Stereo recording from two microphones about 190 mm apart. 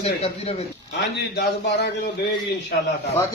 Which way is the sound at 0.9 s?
60° left (ahead or behind).